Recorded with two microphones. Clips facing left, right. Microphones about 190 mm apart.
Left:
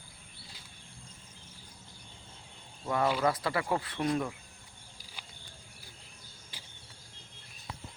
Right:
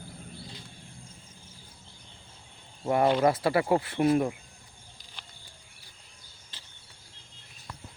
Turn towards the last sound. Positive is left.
turn(degrees=10)  # may be behind; listen again after turning